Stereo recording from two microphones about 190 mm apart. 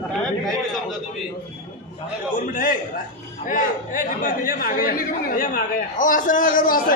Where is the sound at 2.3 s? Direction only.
45° left (ahead or behind).